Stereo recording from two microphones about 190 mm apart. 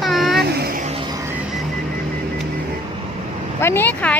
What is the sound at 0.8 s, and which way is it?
Music, 30° right (ahead or behind).